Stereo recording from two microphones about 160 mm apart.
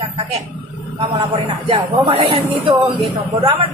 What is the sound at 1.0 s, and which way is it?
Speech, 35° right (ahead or behind).